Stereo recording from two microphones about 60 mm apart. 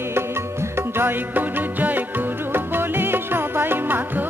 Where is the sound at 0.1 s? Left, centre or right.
Right.